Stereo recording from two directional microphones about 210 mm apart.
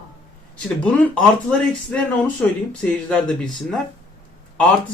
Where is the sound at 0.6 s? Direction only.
5° left (ahead or behind).